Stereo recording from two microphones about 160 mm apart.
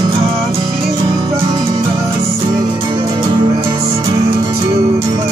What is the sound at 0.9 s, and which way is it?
Music, 25° right (ahead or behind).